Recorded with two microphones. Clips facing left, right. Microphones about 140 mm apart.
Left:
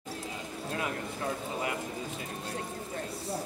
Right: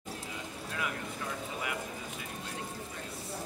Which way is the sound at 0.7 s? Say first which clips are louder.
Left 4 dB; 30° left (ahead or behind).